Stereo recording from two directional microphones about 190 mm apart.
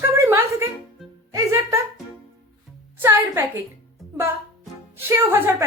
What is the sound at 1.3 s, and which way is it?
Music, 15° right (ahead or behind).